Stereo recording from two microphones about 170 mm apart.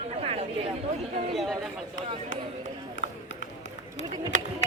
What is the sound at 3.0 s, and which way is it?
Run, 90° left.